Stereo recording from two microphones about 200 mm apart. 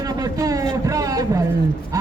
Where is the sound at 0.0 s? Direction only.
20° right (ahead or behind).